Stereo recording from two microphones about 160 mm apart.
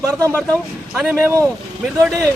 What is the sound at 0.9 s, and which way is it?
Speech, centre (ahead or behind).